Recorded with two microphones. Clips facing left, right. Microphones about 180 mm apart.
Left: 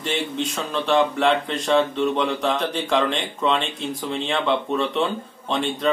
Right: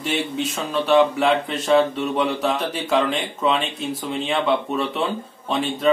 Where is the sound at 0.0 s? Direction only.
5° right (ahead or behind).